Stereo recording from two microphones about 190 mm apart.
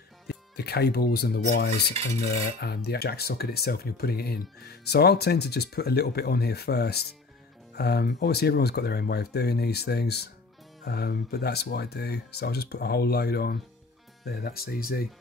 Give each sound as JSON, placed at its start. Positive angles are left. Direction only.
{"t": 0.3, "sound": "speech", "side_deg": 60}